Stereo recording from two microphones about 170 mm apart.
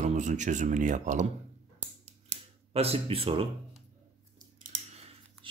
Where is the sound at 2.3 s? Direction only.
35° right (ahead or behind).